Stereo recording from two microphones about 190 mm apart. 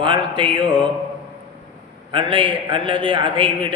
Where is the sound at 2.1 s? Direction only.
25° right (ahead or behind).